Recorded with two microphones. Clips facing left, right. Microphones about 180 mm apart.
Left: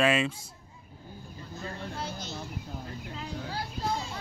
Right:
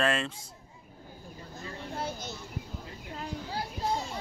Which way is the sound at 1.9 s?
50° right (ahead or behind).